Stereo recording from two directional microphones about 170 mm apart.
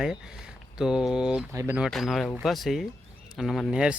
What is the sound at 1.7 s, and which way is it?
Speech, centre (ahead or behind).